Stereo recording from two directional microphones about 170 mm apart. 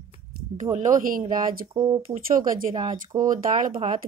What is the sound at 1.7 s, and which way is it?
Speech, 30° right (ahead or behind).